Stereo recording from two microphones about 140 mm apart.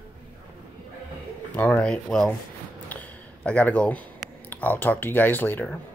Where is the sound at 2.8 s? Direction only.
10° left (ahead or behind).